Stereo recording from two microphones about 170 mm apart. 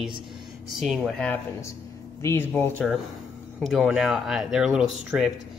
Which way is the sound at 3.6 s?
Centre (ahead or behind).